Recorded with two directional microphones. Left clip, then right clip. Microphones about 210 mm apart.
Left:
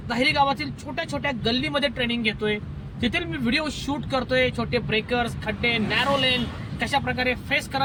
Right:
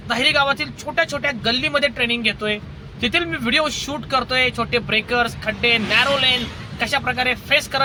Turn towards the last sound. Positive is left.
turn(degrees=-15)  # may be behind; listen again after turning